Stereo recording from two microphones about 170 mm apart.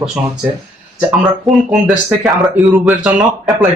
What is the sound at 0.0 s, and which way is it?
Speech, 5° right (ahead or behind).